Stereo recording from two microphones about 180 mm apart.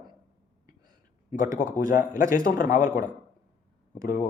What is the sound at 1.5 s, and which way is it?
Speech, 50° left (ahead or behind).